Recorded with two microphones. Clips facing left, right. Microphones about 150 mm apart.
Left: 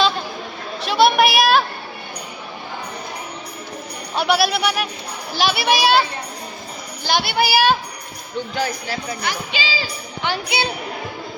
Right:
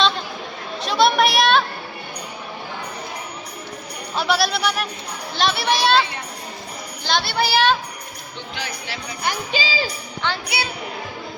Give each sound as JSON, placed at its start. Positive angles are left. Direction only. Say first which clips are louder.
{"t": 0.9, "sound": "a sound", "louder": "left 2 dB", "side_deg": 5}
{"t": 4.1, "sound": "a child's voice", "louder": "left 2 dB", "side_deg": 0}
{"t": 7.1, "sound": "a child's voice", "louder": "left 2 dB", "side_deg": 5}
{"t": 8.5, "sound": "speech", "louder": "left 7 dB", "side_deg": 45}
{"t": 9.2, "sound": "jingle bell", "louder": "right 1 dB", "side_deg": -45}
{"t": 10.2, "sound": "a child's voice", "louder": "left 2 dB", "side_deg": 15}